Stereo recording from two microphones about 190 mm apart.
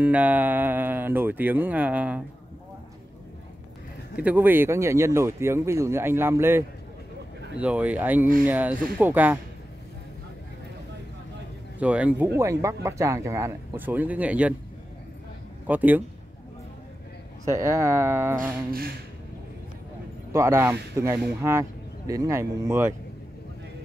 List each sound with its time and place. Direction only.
0.0 s speech: 10° right (ahead or behind)
4.2 s speech: 10° right (ahead or behind)
11.8 s speech: 5° right (ahead or behind)
15.6 s a man's voice: 10° right (ahead or behind)
17.5 s speech: 15° right (ahead or behind)
18.4 s a sound: 50° right (ahead or behind)
20.3 s speech: 15° right (ahead or behind)